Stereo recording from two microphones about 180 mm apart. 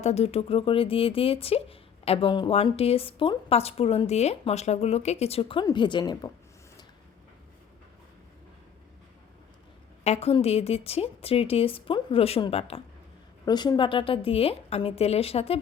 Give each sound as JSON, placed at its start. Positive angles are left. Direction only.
{"t": 0.0, "sound": "speech", "side_deg": 35}
{"t": 10.0, "sound": "speech", "side_deg": 35}
{"t": 13.4, "sound": "speech", "side_deg": 20}